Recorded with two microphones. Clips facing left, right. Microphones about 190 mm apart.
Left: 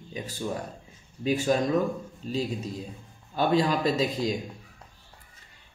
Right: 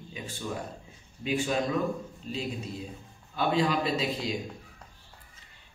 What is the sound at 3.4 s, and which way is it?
Speech, 40° left (ahead or behind).